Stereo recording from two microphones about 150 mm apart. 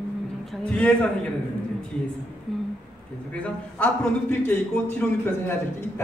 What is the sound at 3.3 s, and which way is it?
A man's voice, 10° left (ahead or behind).